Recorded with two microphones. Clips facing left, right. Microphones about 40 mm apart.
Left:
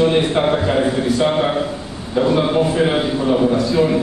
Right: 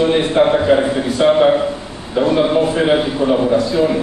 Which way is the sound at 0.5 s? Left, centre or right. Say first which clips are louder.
Right 4 dB; centre.